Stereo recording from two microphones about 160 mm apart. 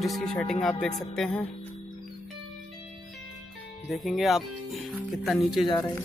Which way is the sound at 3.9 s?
Centre (ahead or behind).